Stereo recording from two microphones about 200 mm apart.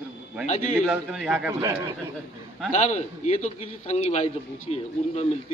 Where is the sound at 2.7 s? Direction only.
35° left (ahead or behind).